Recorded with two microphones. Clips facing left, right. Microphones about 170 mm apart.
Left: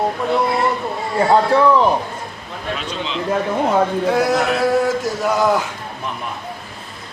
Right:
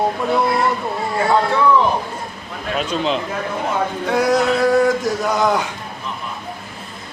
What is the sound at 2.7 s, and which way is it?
Speech, 50° right (ahead or behind).